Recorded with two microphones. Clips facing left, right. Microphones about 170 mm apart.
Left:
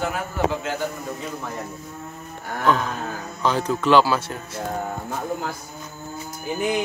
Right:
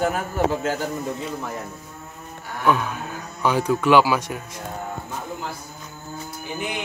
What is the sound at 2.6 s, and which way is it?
A man's voice, 10° right (ahead or behind).